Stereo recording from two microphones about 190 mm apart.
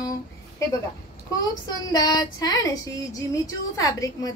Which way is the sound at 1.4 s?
20° left (ahead or behind).